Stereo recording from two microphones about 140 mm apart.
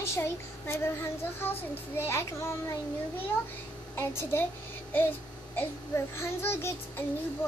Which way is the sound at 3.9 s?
20° left (ahead or behind).